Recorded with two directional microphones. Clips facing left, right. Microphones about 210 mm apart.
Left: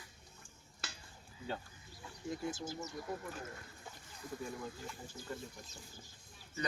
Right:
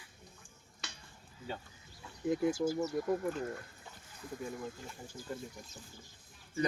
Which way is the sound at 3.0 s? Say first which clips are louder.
Right 10 dB; 50° right (ahead or behind).